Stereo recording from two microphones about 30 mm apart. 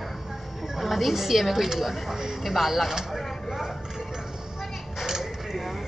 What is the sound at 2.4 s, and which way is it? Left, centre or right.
Speech, centre.